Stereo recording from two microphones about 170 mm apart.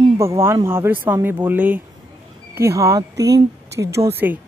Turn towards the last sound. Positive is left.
turn(degrees=-15)  # may be behind; listen again after turning